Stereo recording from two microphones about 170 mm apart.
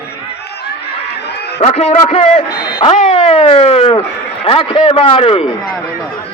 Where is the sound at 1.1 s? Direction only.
75° left (ahead or behind).